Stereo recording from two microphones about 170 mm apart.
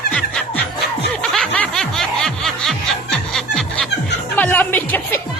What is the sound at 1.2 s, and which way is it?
Snicker, 5° left (ahead or behind).